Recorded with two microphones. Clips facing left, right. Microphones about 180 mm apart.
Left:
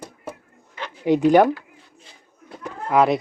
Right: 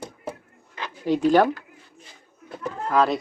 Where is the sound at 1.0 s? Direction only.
15° left (ahead or behind).